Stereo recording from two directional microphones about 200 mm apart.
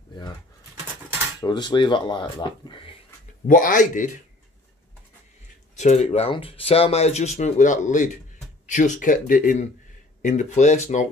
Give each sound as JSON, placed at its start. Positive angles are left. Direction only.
{"t": 1.4, "sound": "speech", "side_deg": 20}
{"t": 3.4, "sound": "speech", "side_deg": 40}
{"t": 5.8, "sound": "speech", "side_deg": 35}